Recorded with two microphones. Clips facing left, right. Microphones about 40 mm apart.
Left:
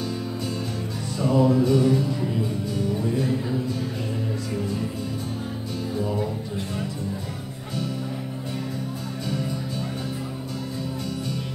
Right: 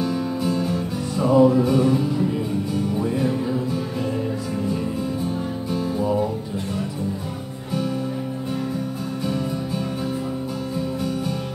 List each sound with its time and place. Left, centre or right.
0.0 s music: centre
5.9 s music: centre